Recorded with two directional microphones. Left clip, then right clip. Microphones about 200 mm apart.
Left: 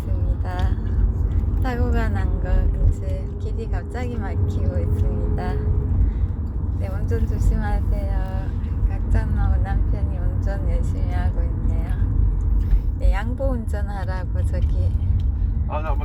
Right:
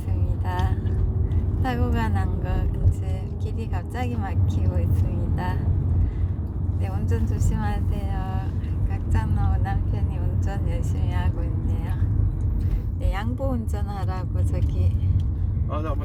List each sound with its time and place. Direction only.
1.6 s speech: 10° right (ahead or behind)
7.1 s speech: 15° right (ahead or behind)
13.1 s speech: 5° right (ahead or behind)